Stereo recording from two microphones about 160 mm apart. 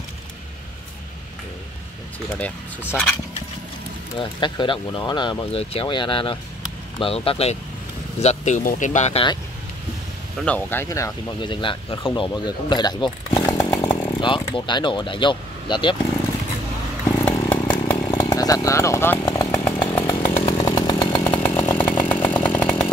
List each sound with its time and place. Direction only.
2.2 s speech: 10° left (ahead or behind)
4.2 s speech: 30° left (ahead or behind); by 9.2 s 45° left (ahead or behind)
10.4 s speech: 10° left (ahead or behind)
11.4 s speech: 30° left (ahead or behind)
17.2 s chainsaw: 10° left (ahead or behind)
17.6 s chainsaw: 25° left (ahead or behind)